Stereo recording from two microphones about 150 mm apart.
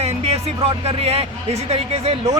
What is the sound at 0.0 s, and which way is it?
Speech, 45° right (ahead or behind).